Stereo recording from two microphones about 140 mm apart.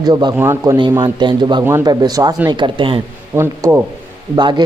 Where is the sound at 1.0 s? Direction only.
30° right (ahead or behind).